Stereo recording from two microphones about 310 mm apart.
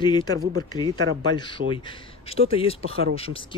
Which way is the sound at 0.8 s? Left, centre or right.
Right.